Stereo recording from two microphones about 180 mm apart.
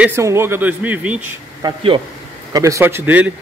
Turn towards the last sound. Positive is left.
turn(degrees=-10)  # may be behind; listen again after turning